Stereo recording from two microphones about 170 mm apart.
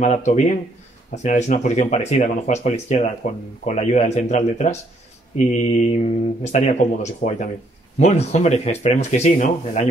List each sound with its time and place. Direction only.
0.0 s speech: 45° left (ahead or behind)